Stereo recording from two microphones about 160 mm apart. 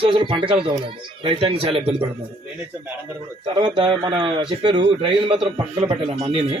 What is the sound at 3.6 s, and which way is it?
Speech, 30° right (ahead or behind).